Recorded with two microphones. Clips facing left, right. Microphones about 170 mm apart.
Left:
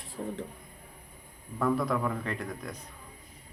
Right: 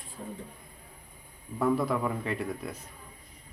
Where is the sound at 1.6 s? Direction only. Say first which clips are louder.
Right 1 dB; 5° right (ahead or behind).